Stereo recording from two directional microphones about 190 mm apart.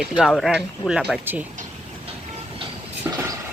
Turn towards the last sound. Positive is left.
turn(degrees=-15)  # may be behind; listen again after turning